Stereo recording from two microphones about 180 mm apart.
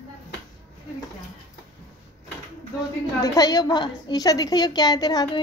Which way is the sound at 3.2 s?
20° left (ahead or behind).